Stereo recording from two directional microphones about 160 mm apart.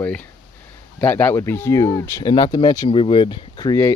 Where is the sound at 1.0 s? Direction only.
10° left (ahead or behind); by 3.7 s 30° left (ahead or behind).